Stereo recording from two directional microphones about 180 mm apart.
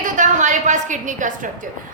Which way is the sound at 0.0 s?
45° right (ahead or behind).